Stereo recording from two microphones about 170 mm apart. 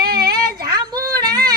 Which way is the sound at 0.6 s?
25° right (ahead or behind).